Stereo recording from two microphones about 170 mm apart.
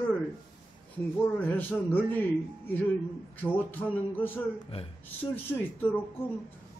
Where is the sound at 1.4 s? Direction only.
10° left (ahead or behind).